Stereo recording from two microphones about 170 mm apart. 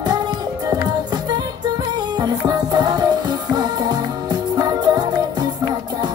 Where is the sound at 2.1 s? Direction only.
25° right (ahead or behind).